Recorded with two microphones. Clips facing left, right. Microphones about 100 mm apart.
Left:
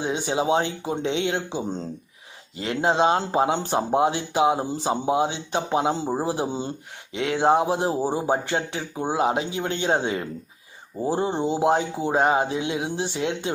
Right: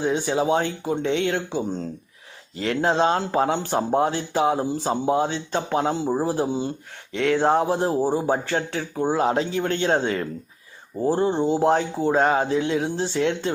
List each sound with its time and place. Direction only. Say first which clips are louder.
0.0 s speech: right 2 dB; 20° left (ahead or behind)
7.1 s speech: right 1 dB; 15° left (ahead or behind)